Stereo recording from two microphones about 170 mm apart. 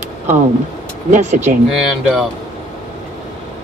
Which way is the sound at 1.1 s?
40° right (ahead or behind).